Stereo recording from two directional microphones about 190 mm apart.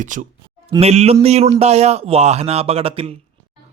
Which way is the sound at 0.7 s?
30° right (ahead or behind).